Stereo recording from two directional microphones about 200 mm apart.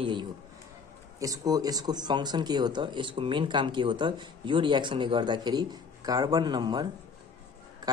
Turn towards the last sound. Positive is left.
turn(degrees=-20)  # may be behind; listen again after turning